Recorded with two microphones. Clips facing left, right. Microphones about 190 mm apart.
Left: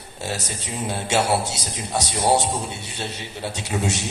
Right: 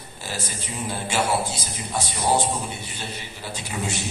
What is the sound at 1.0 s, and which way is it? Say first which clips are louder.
A man's voice: left 3 dB; 75° left (ahead or behind).